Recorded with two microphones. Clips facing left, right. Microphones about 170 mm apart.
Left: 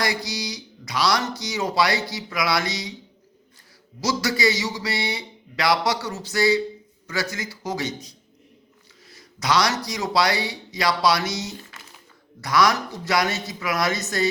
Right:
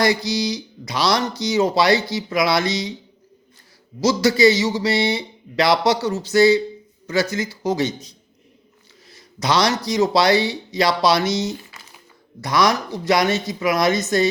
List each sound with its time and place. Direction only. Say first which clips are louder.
0.0 s speech: right 8 dB; 25° right (ahead or behind)
4.0 s speech: right 8 dB; 25° right (ahead or behind)